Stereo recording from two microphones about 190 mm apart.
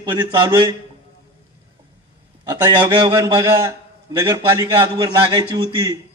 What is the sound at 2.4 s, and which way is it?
A man's voice, 20° right (ahead or behind).